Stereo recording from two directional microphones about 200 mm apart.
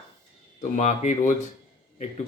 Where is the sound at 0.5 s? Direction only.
35° left (ahead or behind).